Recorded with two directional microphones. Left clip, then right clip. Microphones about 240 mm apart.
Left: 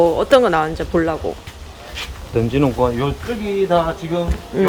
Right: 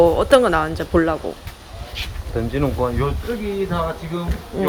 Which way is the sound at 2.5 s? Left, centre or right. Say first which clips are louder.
Left 4 dB; left.